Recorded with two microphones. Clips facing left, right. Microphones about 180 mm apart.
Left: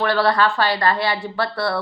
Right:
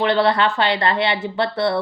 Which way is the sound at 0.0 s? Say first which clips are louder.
Right 1 dB; 20° right (ahead or behind).